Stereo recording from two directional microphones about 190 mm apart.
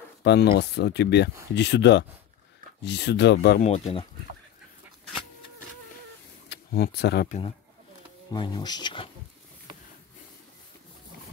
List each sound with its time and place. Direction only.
0.2 s speech: 60° left (ahead or behind)
3.5 s speech: 35° left (ahead or behind)
6.5 s speech: 55° left (ahead or behind)
7.2 s speech: 35° left (ahead or behind)
8.3 s speech: 20° left (ahead or behind)